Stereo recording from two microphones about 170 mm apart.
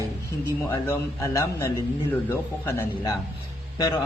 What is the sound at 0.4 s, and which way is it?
A man's voice, 15° left (ahead or behind).